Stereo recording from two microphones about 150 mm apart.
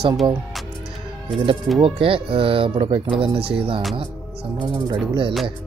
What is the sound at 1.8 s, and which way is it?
Speech, 35° right (ahead or behind).